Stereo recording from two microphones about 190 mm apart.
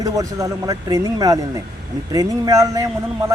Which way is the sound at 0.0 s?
15° right (ahead or behind).